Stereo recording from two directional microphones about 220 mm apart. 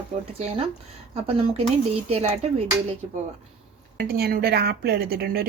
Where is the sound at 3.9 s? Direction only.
45° right (ahead or behind).